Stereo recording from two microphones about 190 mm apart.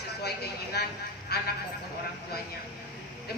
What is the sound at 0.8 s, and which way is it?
Speech, 60° left (ahead or behind).